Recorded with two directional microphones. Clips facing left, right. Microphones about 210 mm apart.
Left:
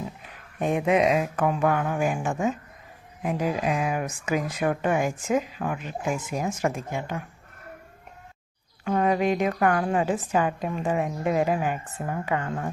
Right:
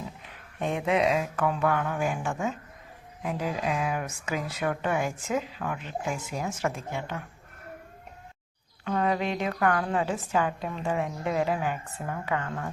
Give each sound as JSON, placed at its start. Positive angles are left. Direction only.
{"t": 0.6, "sound": "speech", "side_deg": 15}
{"t": 8.8, "sound": "a woman's voice", "side_deg": 15}